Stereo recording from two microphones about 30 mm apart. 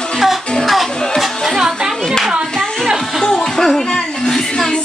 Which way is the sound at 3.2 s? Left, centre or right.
Centre.